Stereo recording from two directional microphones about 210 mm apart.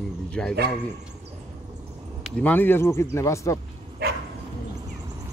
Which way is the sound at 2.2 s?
10° left (ahead or behind).